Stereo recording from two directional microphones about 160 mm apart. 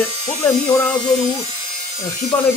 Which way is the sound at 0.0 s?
15° left (ahead or behind).